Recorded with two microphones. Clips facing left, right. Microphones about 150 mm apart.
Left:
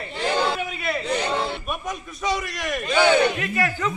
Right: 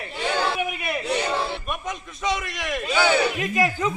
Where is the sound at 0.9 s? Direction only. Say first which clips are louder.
Left 2 dB; 10° right (ahead or behind).